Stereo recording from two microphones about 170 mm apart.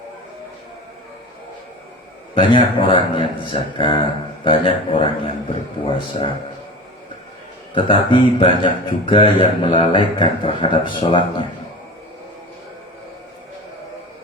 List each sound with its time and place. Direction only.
2.3 s speech: 30° left (ahead or behind)
7.7 s speech: 30° left (ahead or behind)